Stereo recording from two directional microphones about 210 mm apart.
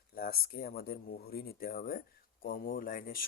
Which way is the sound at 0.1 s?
45° left (ahead or behind).